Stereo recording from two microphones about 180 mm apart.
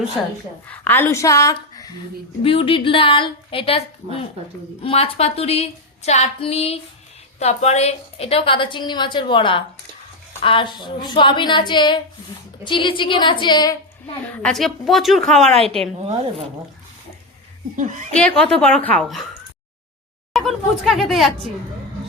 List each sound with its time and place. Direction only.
0.7 s a woman's voice: 10° left (ahead or behind)
2.4 s a woman's voice: 30° left (ahead or behind)
14.3 s a woman's voice: 5° left (ahead or behind)
15.5 s speech: 35° right (ahead or behind)
18.6 s a woman's voice: 5° left (ahead or behind)
20.3 s a woman's voice: centre (ahead or behind)